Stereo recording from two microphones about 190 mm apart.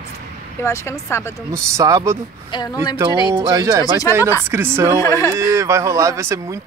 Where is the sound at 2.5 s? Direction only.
20° left (ahead or behind).